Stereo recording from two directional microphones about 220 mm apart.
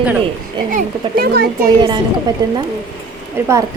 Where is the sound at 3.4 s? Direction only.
10° right (ahead or behind).